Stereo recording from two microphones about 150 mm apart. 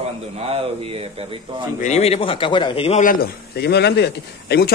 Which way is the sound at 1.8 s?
45° left (ahead or behind).